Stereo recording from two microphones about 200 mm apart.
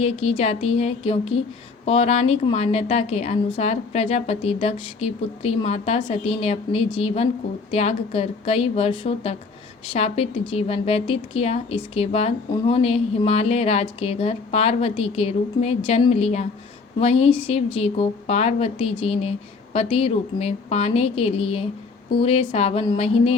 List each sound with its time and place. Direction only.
0.0 s a woman's voice: 30° left (ahead or behind)